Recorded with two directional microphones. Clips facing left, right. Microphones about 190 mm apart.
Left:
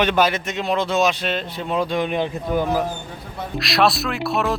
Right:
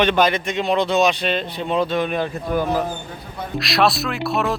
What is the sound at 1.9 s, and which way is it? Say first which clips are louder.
Speech: even; 15° left (ahead or behind).